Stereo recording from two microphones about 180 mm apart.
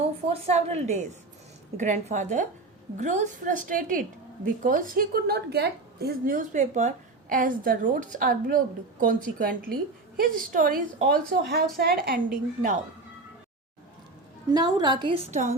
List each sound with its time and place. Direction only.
0.3 s a woman's voice: 40° right (ahead or behind)
14.5 s a woman's voice: 25° right (ahead or behind)
15.3 s a woman's voice: 40° right (ahead or behind)